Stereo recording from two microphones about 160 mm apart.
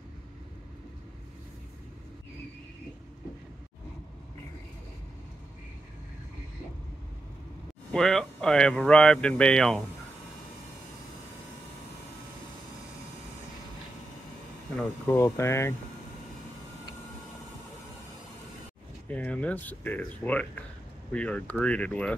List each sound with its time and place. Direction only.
7.9 s speech: 5° left (ahead or behind)
15.0 s speech: 20° left (ahead or behind)
19.0 s speech: 10° left (ahead or behind)